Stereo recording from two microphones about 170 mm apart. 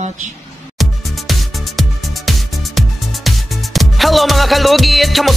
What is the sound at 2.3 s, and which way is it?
Speech, centre (ahead or behind).